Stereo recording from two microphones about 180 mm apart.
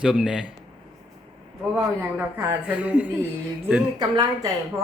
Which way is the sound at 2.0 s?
15° right (ahead or behind).